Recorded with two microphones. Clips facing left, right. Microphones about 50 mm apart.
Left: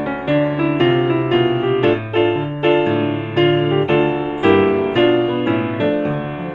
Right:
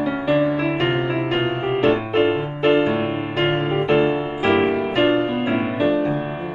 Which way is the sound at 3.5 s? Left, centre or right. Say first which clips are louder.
Left 3 dB; left.